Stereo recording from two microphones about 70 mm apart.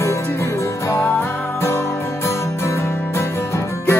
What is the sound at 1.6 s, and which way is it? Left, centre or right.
Music, left.